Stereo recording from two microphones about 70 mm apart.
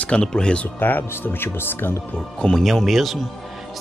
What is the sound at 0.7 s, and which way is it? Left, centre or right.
Speech, left.